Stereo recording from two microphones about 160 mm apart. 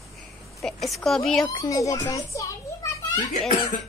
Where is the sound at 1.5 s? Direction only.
20° left (ahead or behind).